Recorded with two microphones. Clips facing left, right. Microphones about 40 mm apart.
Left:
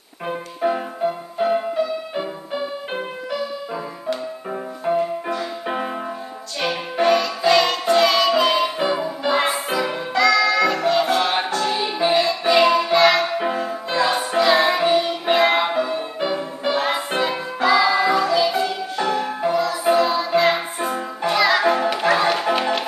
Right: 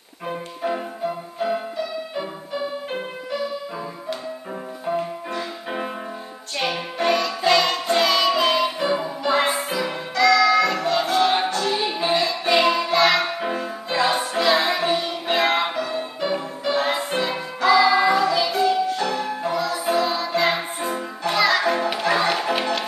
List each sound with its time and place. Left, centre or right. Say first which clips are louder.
0.3 s music: left 4 dB; centre
4.9 s music: left 4 dB; left
6.7 s music: left 5 dB; centre
11.8 s music: left 3 dB; centre
15.7 s music: left 4 dB; centre
19.1 s music: left 3 dB; centre
19.5 s music: left 4 dB; centre
22.3 s music: left 2 dB; centre